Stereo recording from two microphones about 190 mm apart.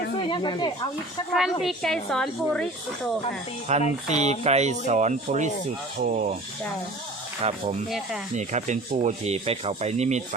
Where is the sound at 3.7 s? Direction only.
35° right (ahead or behind).